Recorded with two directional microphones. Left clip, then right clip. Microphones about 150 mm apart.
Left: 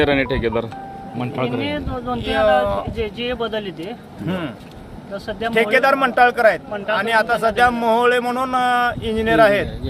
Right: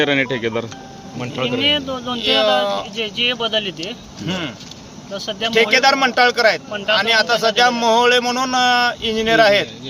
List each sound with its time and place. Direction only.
0.0 s a man's voice: 10° left (ahead or behind)
1.5 s speech: 25° right (ahead or behind)
2.3 s a man's voice: 10° left (ahead or behind)
2.9 s speech: 20° right (ahead or behind)
4.3 s a man's voice: 15° left (ahead or behind)
5.1 s speech: 20° right (ahead or behind)
5.7 s a man's voice: 20° left (ahead or behind)